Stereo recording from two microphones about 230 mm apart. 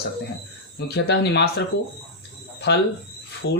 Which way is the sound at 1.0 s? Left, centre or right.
Left.